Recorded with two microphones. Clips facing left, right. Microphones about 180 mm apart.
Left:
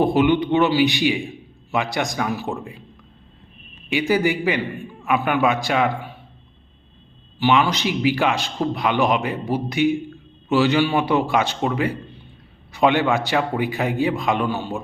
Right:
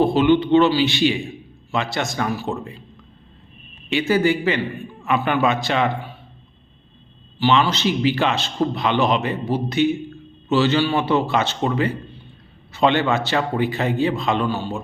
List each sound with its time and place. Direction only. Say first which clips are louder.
0.0 s a man's voice: right 1 dB; 15° left (ahead or behind)
3.8 s a man's voice: right 1 dB; 15° left (ahead or behind)
7.3 s a man's voice: even; 15° left (ahead or behind)